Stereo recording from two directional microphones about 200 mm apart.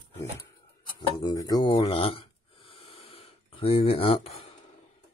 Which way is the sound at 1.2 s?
20° left (ahead or behind).